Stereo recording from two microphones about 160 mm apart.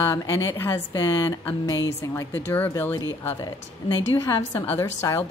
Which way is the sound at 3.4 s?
30° left (ahead or behind).